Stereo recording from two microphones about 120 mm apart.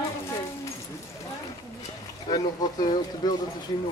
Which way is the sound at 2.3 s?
35° left (ahead or behind).